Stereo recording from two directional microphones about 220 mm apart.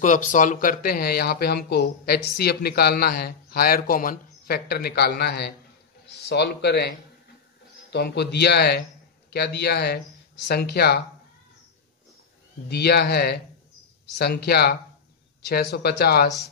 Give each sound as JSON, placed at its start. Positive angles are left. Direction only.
{"t": 0.0, "sound": "a man's voice", "side_deg": 35}
{"t": 12.6, "sound": "speech", "side_deg": 45}